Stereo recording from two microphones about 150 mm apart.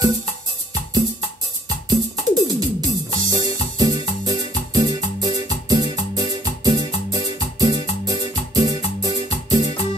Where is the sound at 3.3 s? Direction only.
25° right (ahead or behind).